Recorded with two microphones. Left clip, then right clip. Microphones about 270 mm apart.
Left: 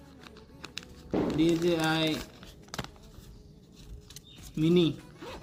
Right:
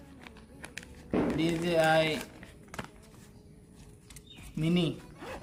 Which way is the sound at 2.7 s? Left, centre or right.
Left.